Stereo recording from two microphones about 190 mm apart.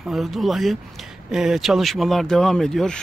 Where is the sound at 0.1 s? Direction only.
Centre (ahead or behind).